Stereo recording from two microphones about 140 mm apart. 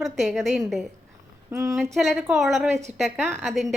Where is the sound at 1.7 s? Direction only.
Centre (ahead or behind).